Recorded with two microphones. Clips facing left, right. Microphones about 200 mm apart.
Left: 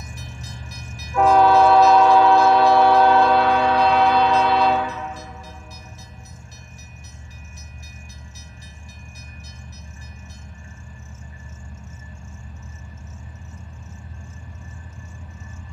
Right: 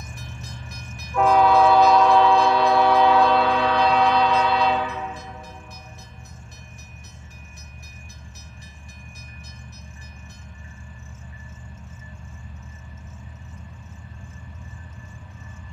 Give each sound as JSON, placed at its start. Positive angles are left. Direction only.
{"t": 0.1, "sound": "vehicle", "side_deg": -55}
{"t": 1.1, "sound": "train", "side_deg": 0}